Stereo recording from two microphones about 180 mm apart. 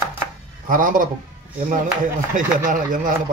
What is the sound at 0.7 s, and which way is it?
Speech, 50° right (ahead or behind).